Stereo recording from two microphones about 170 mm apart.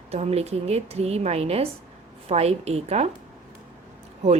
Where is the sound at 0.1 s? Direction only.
40° right (ahead or behind).